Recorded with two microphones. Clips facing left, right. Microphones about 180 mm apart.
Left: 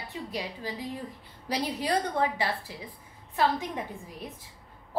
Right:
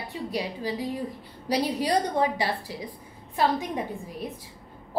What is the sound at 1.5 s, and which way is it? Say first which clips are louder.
Speech: right 4 dB; 35° right (ahead or behind).